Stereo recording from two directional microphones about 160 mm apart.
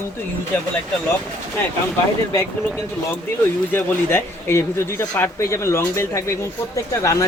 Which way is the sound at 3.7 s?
15° left (ahead or behind).